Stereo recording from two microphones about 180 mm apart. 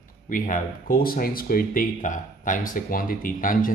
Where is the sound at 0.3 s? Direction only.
50° left (ahead or behind).